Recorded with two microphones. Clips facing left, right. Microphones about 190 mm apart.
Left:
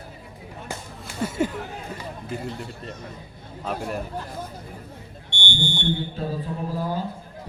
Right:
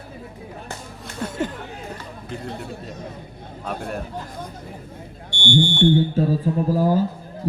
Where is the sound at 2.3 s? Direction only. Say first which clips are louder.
Right 2 dB; centre (ahead or behind).